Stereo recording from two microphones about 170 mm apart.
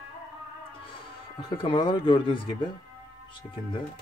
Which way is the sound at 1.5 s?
30° left (ahead or behind).